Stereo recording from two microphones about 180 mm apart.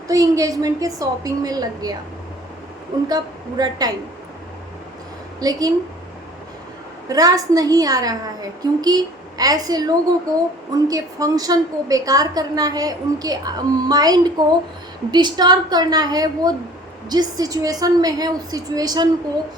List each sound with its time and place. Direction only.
0.1 s a woman's voice: 20° right (ahead or behind)
3.1 s a woman's voice: 20° right (ahead or behind)
5.4 s a woman's voice: 20° right (ahead or behind)
7.1 s a woman's voice: 20° right (ahead or behind)